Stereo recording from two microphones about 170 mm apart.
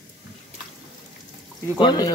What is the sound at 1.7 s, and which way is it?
Speech, 25° left (ahead or behind).